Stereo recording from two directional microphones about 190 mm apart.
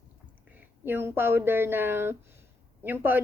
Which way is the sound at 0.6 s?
10° right (ahead or behind).